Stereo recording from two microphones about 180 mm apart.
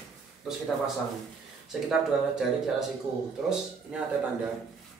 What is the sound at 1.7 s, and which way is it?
Speech, centre (ahead or behind).